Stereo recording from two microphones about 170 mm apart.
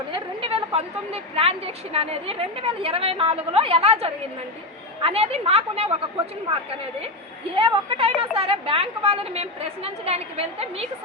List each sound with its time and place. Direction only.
0.1 s a woman's voice: 35° right (ahead or behind)
7.5 s a woman's voice: 35° right (ahead or behind)